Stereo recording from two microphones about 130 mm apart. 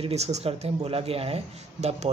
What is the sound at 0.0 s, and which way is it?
Speech, 55° right (ahead or behind).